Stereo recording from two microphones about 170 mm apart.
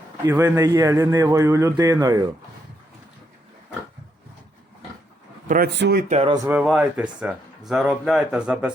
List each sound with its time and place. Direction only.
0.3 s a man's voice: 15° right (ahead or behind)
5.5 s a man's voice: 65° right (ahead or behind)
6.2 s a man's voice: 20° right (ahead or behind)
6.5 s speech: 5° right (ahead or behind)